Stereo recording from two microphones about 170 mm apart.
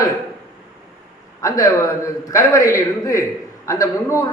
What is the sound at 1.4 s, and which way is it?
A man's voice, 20° left (ahead or behind).